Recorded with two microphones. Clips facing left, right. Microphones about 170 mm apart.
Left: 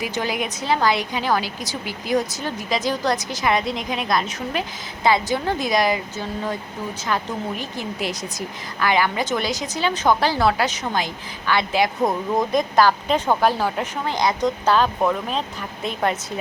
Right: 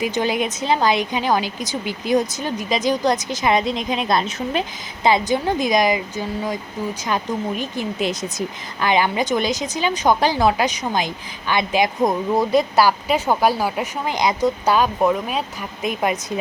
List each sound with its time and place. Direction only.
0.0 s a woman's voice: 20° right (ahead or behind)